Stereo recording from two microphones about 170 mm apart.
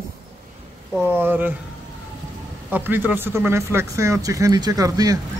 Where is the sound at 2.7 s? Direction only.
10° right (ahead or behind).